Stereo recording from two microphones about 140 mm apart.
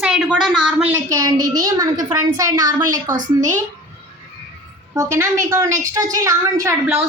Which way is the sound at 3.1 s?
65° right (ahead or behind).